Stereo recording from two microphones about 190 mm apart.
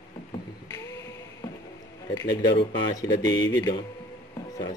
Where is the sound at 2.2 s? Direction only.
65° left (ahead or behind).